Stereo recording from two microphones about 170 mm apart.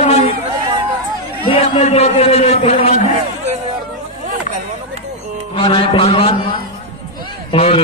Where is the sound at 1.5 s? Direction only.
35° left (ahead or behind).